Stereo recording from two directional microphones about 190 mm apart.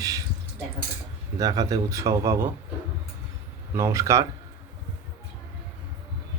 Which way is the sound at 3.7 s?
15° right (ahead or behind).